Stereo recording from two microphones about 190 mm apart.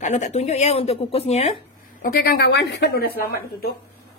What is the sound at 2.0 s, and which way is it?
A woman's voice, 55° left (ahead or behind).